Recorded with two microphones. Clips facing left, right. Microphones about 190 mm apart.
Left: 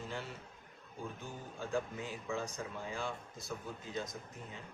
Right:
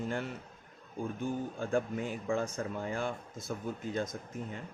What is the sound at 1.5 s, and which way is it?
Speech, 55° right (ahead or behind).